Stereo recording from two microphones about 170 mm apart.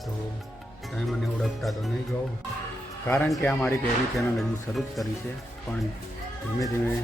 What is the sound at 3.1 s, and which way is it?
A man's voice, 5° left (ahead or behind).